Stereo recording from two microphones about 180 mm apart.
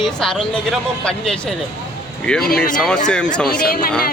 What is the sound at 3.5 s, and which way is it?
Speech, 55° left (ahead or behind).